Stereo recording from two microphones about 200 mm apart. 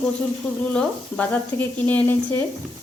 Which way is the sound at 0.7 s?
5° left (ahead or behind).